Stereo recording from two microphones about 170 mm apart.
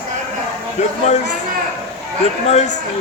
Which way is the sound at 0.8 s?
40° left (ahead or behind).